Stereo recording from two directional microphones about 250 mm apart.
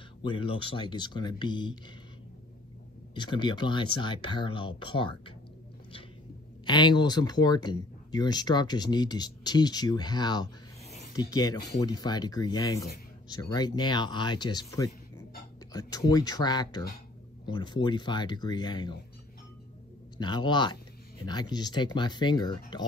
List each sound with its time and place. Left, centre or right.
0.2 s speech: centre
3.2 s speech: centre
6.6 s speech: centre
20.2 s speech: centre